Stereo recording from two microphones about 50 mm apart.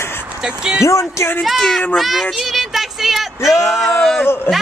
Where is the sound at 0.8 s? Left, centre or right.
Left.